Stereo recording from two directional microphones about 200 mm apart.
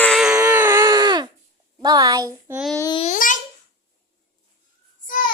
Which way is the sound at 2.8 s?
20° left (ahead or behind).